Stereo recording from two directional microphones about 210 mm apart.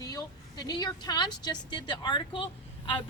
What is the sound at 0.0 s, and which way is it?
A woman's voice, 20° left (ahead or behind).